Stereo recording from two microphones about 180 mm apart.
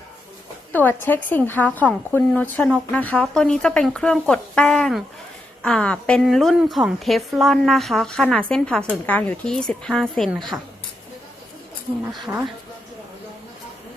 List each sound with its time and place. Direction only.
0.7 s a woman's voice: 10° left (ahead or behind)